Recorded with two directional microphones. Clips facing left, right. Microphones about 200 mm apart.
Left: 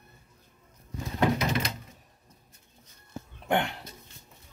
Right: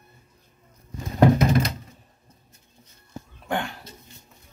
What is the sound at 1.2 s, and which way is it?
Door, 45° right (ahead or behind).